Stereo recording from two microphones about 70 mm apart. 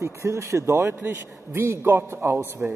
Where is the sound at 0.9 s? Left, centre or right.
Right.